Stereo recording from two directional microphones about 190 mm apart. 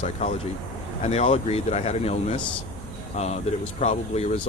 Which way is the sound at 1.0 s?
35° left (ahead or behind).